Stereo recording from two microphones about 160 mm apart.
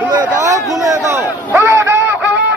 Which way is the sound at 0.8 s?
15° right (ahead or behind).